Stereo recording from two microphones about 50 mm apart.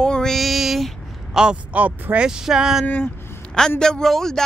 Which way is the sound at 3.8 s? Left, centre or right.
Centre.